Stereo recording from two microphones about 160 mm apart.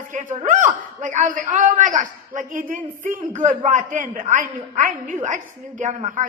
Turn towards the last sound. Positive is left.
turn(degrees=-50)  # may be behind; listen again after turning